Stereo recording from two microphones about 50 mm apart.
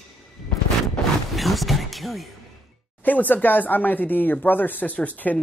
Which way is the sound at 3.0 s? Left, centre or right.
Left.